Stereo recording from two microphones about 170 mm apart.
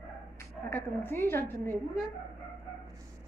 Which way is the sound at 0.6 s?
15° left (ahead or behind).